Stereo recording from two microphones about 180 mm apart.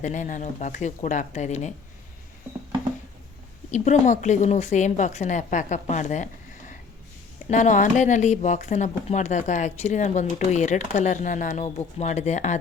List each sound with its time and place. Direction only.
0.0 s speech: 45° left (ahead or behind)
3.7 s speech: 40° left (ahead or behind)
7.5 s speech: 45° left (ahead or behind)